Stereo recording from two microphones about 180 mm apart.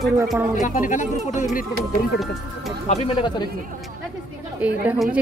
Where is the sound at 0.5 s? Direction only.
45° left (ahead or behind).